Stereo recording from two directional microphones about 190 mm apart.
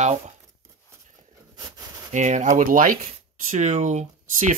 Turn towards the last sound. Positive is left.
turn(degrees=-40)  # may be behind; listen again after turning